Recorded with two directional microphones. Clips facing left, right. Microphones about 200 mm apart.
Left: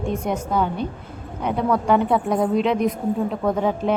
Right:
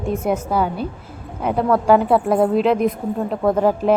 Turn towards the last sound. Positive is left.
turn(degrees=-5)  # may be behind; listen again after turning